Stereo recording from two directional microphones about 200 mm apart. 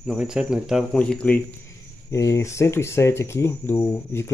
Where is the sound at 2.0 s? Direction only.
15° left (ahead or behind).